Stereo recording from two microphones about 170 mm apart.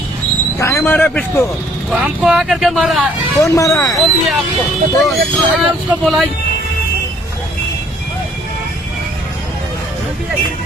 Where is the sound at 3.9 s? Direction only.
Centre (ahead or behind).